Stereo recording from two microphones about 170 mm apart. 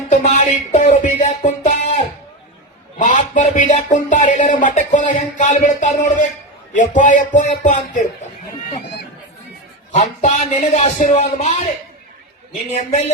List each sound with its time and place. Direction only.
0.1 s music: 45° left (ahead or behind)
3.0 s speech: 45° left (ahead or behind)
9.9 s a man's voice: 40° left (ahead or behind)